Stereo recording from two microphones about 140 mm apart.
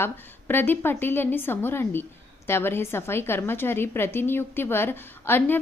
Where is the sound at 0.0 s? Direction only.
15° left (ahead or behind).